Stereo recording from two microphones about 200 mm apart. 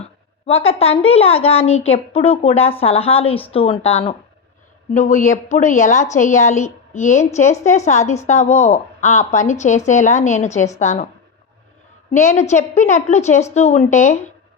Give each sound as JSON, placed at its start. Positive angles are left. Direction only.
{"t": 0.0, "sound": "a woman's voice", "side_deg": 30}
{"t": 12.1, "sound": "a woman's voice", "side_deg": 35}